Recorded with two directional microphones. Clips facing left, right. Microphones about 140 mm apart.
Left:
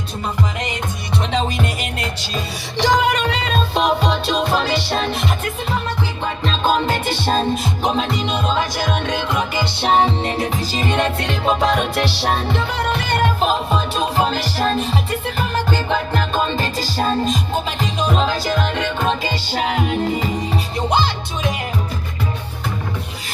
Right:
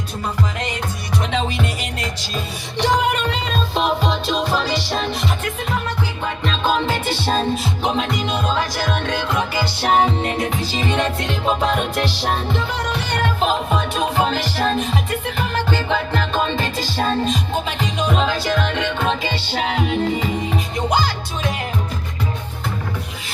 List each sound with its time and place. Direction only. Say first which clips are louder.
1.2 s music: left 2 dB; 35° left (ahead or behind); by 5.4 s 60° left (ahead or behind)
6.4 s music: left 2 dB; 35° left (ahead or behind)
13.7 s music: even; 30° left (ahead or behind)
20.7 s music: left 1 dB; 25° left (ahead or behind)